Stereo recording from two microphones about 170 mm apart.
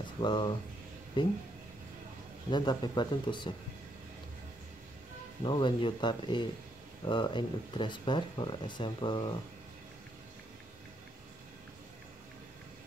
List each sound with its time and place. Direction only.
0.2 s speech: 25° left (ahead or behind)
2.5 s speech: 25° left (ahead or behind)
5.4 s speech: 30° left (ahead or behind)